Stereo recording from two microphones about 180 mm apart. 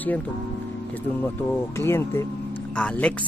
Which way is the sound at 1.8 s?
15° left (ahead or behind).